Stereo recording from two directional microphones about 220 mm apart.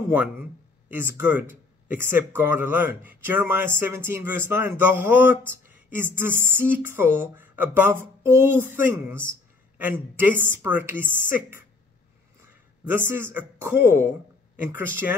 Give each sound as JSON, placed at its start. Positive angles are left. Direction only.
{"t": 0.8, "sound": "a man's voice", "side_deg": -10}